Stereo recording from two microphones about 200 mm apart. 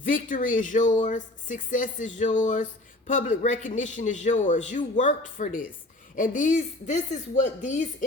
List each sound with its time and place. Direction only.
0.0 s speech: 40° left (ahead or behind)